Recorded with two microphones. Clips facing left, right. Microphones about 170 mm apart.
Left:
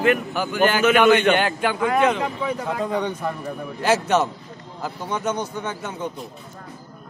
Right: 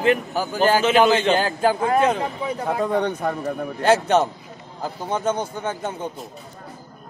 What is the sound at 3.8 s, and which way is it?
Speech, 30° right (ahead or behind).